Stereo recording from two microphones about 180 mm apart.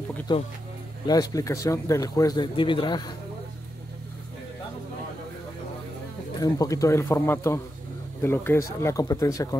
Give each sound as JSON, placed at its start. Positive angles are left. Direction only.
{"t": 0.3, "sound": "speech", "side_deg": 25}
{"t": 6.4, "sound": "speech", "side_deg": 20}